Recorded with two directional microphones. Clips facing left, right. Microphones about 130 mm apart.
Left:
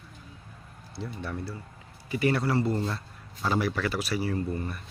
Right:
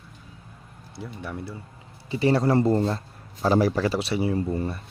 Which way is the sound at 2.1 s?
30° right (ahead or behind).